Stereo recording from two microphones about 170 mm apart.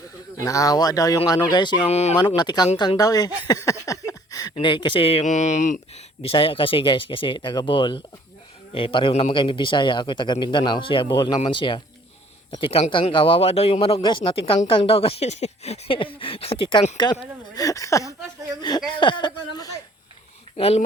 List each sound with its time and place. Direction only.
0.3 s a man's voice: 20° left (ahead or behind)
1.9 s speech: 40° left (ahead or behind)
2.1 s a man's voice: 25° left (ahead or behind); by 6.0 s 45° left (ahead or behind)
6.2 s a man's voice: 35° left (ahead or behind)
17.5 s a man's voice: 20° left (ahead or behind)
20.6 s speech: 35° left (ahead or behind)